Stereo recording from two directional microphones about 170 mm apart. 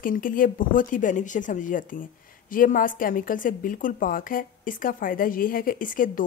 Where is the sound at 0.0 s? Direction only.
55° left (ahead or behind).